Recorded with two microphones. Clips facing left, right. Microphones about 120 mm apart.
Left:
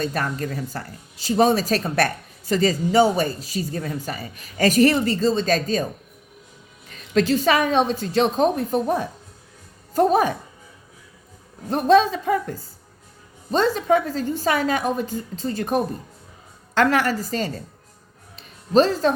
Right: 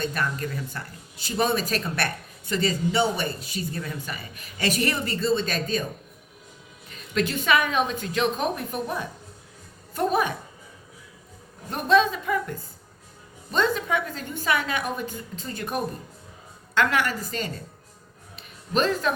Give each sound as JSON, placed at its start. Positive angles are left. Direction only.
{"t": 0.0, "sound": "speech", "side_deg": 40}
{"t": 7.1, "sound": "speech", "side_deg": 35}
{"t": 11.7, "sound": "speech", "side_deg": 35}
{"t": 18.3, "sound": "a sound", "side_deg": 35}